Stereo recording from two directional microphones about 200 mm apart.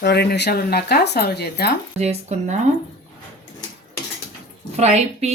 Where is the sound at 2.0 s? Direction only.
35° right (ahead or behind).